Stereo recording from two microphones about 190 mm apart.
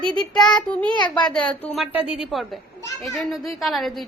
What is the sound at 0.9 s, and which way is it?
Speech, 25° left (ahead or behind).